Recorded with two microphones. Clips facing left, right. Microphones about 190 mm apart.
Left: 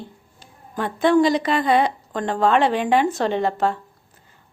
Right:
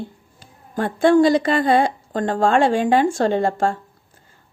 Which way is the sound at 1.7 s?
45° right (ahead or behind).